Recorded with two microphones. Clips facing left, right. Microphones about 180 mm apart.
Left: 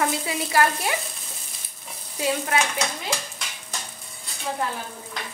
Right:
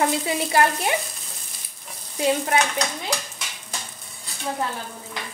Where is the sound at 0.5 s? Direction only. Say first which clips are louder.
Right 1 dB; 25° right (ahead or behind).